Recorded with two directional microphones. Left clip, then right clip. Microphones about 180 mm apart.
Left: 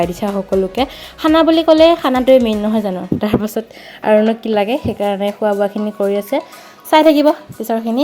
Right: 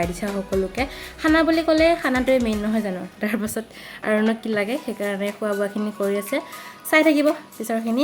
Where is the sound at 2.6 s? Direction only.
25° left (ahead or behind).